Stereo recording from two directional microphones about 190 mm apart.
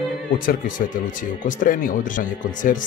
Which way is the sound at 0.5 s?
45° left (ahead or behind).